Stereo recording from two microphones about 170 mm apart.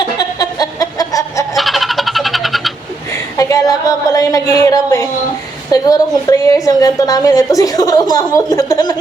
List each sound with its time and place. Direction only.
0.2 s a sound: 20° left (ahead or behind)
1.5 s vehicle: centre (ahead or behind)
3.1 s a woman's voice: 20° left (ahead or behind)